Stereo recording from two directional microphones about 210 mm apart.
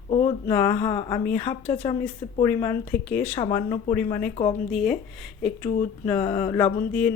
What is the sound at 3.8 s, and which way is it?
Speech, 10° left (ahead or behind).